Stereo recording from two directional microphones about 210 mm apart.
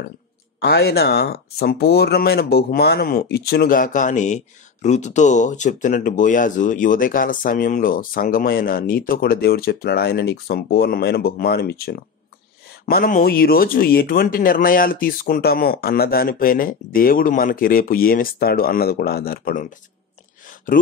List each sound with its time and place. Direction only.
0.6 s speech: 50° left (ahead or behind)
20.8 s speech: 40° left (ahead or behind)